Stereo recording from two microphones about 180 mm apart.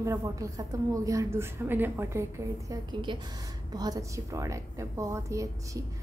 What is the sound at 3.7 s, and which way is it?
A woman's voice, 20° right (ahead or behind).